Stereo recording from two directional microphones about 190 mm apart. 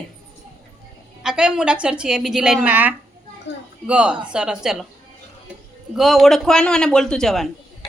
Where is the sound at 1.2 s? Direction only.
5° right (ahead or behind).